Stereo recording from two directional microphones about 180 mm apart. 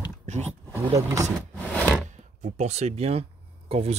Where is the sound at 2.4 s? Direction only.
40° right (ahead or behind).